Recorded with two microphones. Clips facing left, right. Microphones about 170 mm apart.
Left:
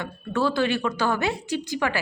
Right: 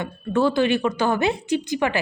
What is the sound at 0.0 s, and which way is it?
Speech, 20° right (ahead or behind).